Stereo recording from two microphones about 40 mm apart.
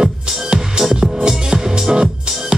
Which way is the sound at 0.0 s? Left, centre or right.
Centre.